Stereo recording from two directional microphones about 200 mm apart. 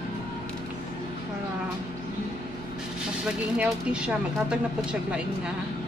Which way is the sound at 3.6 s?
5° right (ahead or behind).